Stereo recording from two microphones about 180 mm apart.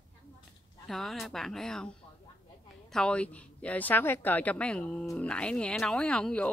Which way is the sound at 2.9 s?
5° left (ahead or behind).